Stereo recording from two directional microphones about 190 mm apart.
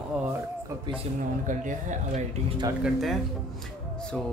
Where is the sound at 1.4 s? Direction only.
40° right (ahead or behind).